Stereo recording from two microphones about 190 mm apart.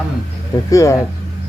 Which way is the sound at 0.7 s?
15° left (ahead or behind).